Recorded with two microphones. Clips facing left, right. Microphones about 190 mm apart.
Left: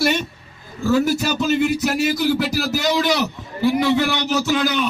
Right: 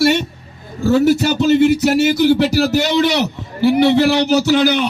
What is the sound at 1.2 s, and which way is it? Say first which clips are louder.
Music: right 6 dB; 25° right (ahead or behind).